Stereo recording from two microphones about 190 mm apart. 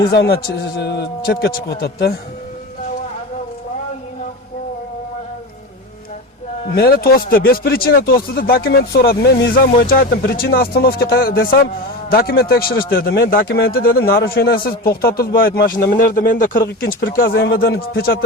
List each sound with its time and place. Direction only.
0.1 s a man's voice: 60° left (ahead or behind)
6.7 s speech: 55° left (ahead or behind)